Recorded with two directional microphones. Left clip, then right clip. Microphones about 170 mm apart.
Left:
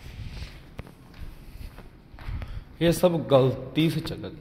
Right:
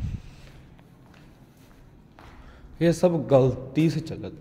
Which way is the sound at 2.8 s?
35° right (ahead or behind).